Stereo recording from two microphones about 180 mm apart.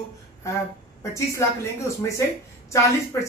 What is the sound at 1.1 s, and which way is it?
Speech, 15° left (ahead or behind).